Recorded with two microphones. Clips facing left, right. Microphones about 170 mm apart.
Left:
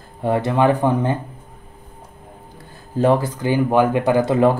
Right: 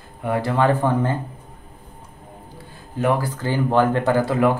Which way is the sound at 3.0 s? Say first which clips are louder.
Left 4 dB; 25° left (ahead or behind).